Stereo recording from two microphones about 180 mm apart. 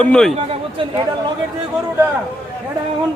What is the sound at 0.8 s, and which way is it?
Speech, 30° right (ahead or behind).